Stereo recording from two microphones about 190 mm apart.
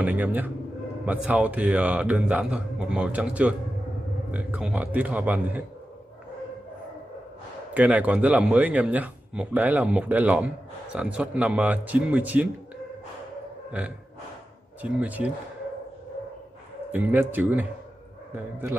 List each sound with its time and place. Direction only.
0.0 s speech: 10° right (ahead or behind)
7.7 s speech: 10° right (ahead or behind)
13.7 s speech: 5° right (ahead or behind)
16.9 s speech: 10° right (ahead or behind)